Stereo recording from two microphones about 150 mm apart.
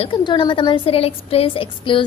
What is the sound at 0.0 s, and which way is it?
A woman's voice, 35° left (ahead or behind).